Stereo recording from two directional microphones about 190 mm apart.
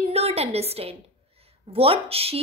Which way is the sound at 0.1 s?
35° right (ahead or behind).